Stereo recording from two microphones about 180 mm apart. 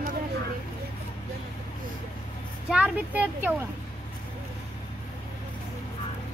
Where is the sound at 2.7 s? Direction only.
5° right (ahead or behind).